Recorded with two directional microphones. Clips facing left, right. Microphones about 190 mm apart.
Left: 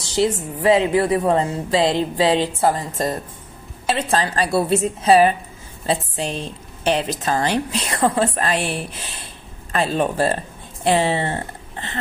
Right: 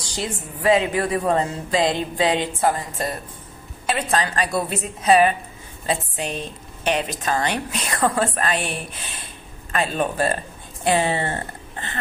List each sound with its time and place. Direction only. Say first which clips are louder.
0.1 s a woman's voice: left 10 dB; 25° left (ahead or behind)
3.8 s a woman's voice: left 2 dB; 30° left (ahead or behind)
9.7 s speech: left 3 dB; 30° left (ahead or behind)